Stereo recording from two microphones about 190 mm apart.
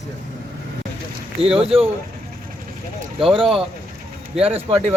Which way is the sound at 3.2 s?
30° right (ahead or behind).